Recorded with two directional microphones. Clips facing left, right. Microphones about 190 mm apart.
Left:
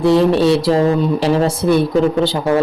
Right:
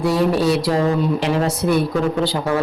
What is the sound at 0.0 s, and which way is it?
Speech, 25° left (ahead or behind).